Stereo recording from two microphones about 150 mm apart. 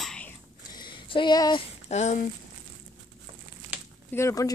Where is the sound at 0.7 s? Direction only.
30° left (ahead or behind).